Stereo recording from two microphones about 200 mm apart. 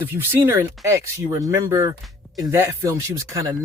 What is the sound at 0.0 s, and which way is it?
Speech, 10° right (ahead or behind).